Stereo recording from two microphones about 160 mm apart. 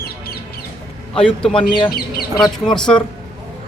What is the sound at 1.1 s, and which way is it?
Speech, 35° left (ahead or behind).